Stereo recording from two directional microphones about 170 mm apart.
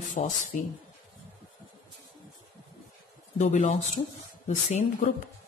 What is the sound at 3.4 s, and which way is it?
Speech, 40° left (ahead or behind).